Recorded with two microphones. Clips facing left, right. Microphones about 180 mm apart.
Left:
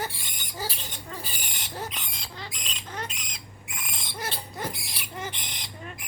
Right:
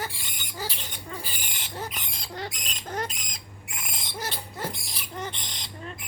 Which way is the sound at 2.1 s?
40° right (ahead or behind).